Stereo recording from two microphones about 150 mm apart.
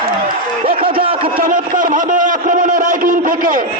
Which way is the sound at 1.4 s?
65° right (ahead or behind).